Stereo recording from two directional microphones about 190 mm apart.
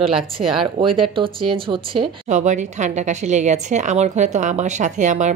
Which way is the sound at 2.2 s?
40° right (ahead or behind).